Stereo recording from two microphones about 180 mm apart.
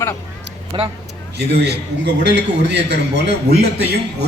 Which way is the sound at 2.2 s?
75° right (ahead or behind).